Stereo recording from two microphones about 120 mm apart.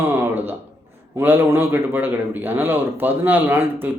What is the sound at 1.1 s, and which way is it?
A man's voice, 15° right (ahead or behind).